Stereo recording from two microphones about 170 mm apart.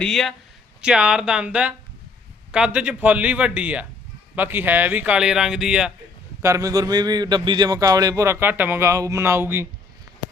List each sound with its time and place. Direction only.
0.0 s speech: centre (ahead or behind)
6.4 s a man's voice: 20° right (ahead or behind)